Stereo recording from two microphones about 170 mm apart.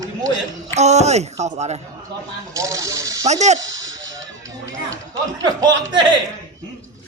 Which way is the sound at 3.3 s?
40° right (ahead or behind).